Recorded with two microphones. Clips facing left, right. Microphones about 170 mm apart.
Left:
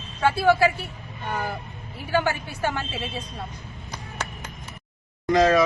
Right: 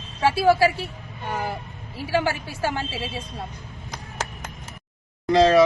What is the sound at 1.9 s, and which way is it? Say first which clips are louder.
A woman's voice: right 1 dB; 30° right (ahead or behind).